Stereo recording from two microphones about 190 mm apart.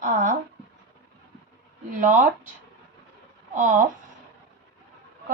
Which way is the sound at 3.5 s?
40° right (ahead or behind).